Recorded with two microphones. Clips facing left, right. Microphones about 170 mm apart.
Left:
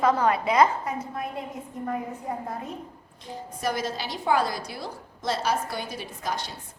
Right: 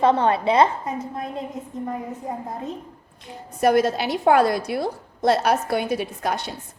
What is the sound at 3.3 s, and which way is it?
A woman's voice, 60° right (ahead or behind).